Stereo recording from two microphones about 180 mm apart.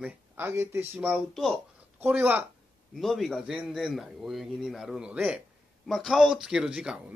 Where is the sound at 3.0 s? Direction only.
Centre (ahead or behind).